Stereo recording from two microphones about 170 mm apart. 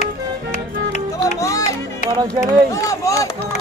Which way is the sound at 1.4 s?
20° left (ahead or behind).